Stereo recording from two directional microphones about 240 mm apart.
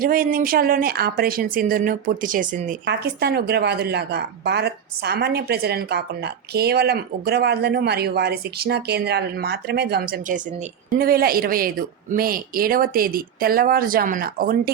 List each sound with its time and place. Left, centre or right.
0.0 s speech: right